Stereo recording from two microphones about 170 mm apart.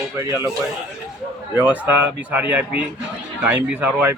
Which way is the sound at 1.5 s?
10° right (ahead or behind).